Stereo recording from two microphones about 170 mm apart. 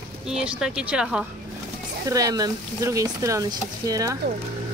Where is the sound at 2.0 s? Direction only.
20° right (ahead or behind).